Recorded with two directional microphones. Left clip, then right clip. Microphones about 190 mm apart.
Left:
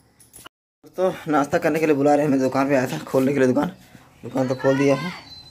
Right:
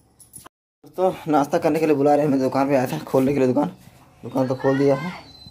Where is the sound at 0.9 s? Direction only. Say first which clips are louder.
Right 1 dB; 5° right (ahead or behind).